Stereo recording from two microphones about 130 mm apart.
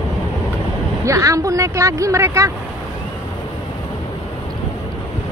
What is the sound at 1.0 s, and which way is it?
Speech, 25° right (ahead or behind).